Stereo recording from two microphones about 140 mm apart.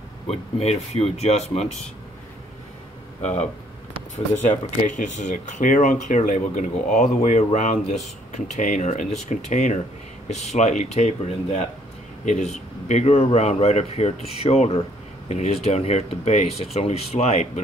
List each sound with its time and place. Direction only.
0.3 s speech: 45° left (ahead or behind)
3.2 s speech: 55° left (ahead or behind)
4.5 s speech: 60° left (ahead or behind)